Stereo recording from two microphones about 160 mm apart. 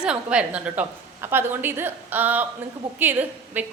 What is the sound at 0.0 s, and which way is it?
A woman's voice, 5° right (ahead or behind).